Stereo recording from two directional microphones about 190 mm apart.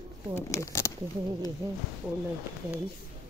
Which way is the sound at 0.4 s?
15° left (ahead or behind).